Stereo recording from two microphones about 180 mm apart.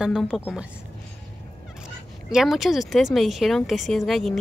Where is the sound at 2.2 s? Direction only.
Centre (ahead or behind).